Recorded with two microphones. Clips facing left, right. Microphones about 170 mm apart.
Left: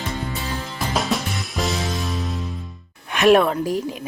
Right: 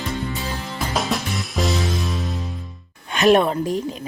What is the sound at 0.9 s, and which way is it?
Music, centre (ahead or behind).